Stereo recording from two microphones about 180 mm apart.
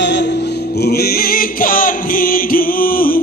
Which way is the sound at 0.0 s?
70° left (ahead or behind).